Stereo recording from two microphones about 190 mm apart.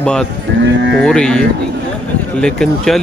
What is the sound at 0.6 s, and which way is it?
Livestock, 70° right (ahead or behind).